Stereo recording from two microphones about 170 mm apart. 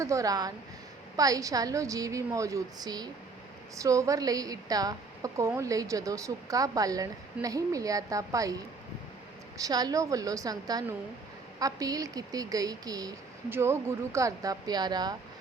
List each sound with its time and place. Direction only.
0.0 s speech: 20° right (ahead or behind)